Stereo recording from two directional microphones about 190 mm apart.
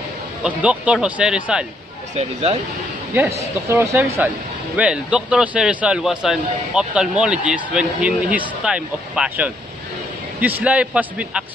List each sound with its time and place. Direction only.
0.4 s a man's voice: 5° right (ahead or behind)
2.1 s speech: 35° right (ahead or behind)
3.7 s a man's voice: 15° right (ahead or behind)